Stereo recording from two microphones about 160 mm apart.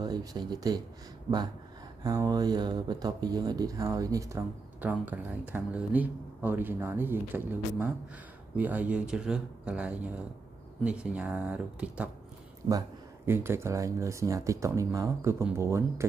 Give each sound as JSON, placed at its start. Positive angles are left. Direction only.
{"t": 0.0, "sound": "speech", "side_deg": -25}
{"t": 1.3, "sound": "speech", "side_deg": -50}
{"t": 2.0, "sound": "speech", "side_deg": -25}